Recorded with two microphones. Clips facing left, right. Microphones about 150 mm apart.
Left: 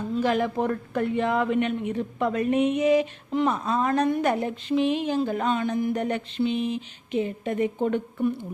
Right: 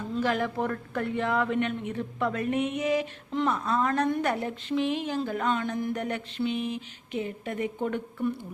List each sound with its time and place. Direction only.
0.2 s a woman's voice: 20° left (ahead or behind)